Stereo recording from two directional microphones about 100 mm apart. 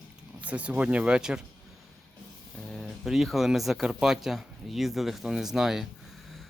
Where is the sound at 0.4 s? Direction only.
15° right (ahead or behind).